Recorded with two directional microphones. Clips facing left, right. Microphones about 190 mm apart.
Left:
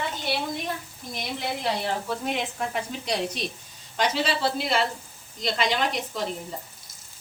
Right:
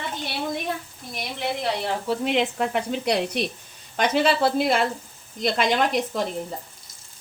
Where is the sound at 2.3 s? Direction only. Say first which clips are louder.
Right 6 dB; 70° right (ahead or behind); by 6.0 s 50° right (ahead or behind).